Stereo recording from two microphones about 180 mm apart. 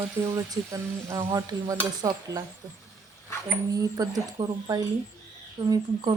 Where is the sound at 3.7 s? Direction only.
20° right (ahead or behind).